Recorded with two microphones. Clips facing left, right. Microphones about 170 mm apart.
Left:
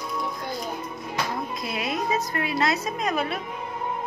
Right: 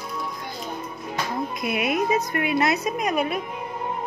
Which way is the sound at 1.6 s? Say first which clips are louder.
Right 8 dB; 20° right (ahead or behind).